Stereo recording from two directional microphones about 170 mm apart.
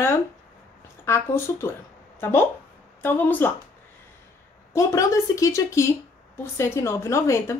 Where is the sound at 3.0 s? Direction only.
10° left (ahead or behind).